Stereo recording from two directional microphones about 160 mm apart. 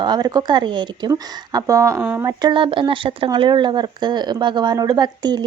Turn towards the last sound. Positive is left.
turn(degrees=-25)  # may be behind; listen again after turning